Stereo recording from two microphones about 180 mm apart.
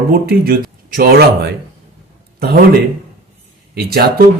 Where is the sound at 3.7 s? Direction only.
60° right (ahead or behind).